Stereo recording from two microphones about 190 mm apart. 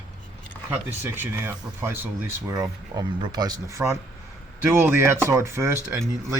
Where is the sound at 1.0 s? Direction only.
10° right (ahead or behind).